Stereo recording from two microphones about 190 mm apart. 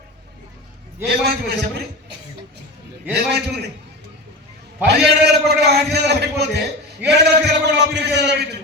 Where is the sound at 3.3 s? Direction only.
60° right (ahead or behind).